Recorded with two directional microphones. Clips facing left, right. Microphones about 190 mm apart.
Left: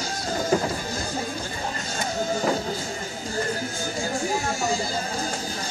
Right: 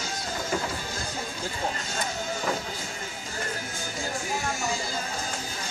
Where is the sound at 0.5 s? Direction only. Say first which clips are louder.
Left 7 dB; 35° left (ahead or behind).